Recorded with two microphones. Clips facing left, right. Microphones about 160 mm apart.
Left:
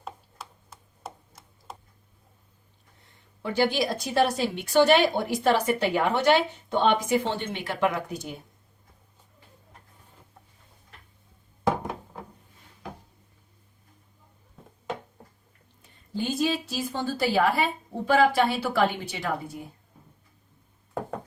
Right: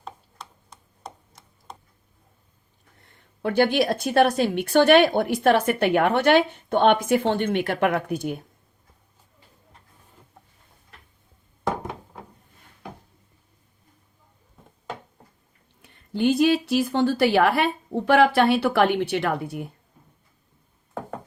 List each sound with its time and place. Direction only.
0.0 s chopping: 5° left (ahead or behind)
3.4 s a woman's voice: 55° right (ahead or behind)
15.8 s speech: 70° right (ahead or behind)